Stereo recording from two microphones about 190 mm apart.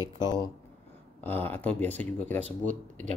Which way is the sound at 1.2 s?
10° left (ahead or behind).